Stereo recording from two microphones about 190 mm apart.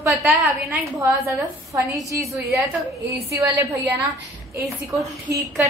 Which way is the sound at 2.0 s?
15° right (ahead or behind).